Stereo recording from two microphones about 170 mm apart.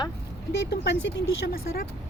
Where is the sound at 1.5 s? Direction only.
60° left (ahead or behind).